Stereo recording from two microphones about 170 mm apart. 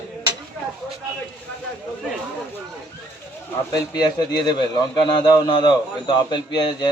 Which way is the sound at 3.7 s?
25° left (ahead or behind).